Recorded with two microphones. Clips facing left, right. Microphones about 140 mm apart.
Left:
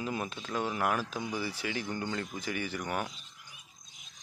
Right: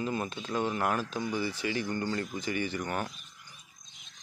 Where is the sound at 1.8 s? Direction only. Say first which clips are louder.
Right 3 dB; 15° left (ahead or behind).